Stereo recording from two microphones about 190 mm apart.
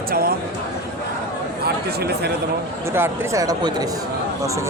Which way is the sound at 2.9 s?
15° right (ahead or behind).